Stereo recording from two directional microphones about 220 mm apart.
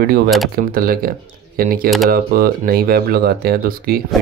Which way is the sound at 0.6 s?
40° right (ahead or behind).